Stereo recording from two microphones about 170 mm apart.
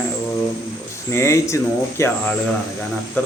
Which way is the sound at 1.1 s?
15° left (ahead or behind).